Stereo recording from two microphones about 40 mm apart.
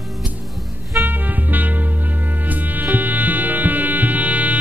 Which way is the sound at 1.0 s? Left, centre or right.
Right.